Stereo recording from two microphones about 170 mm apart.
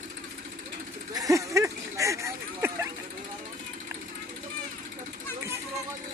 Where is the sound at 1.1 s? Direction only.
20° right (ahead or behind).